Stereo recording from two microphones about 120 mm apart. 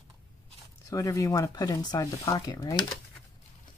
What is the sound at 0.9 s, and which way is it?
Speech, 30° left (ahead or behind).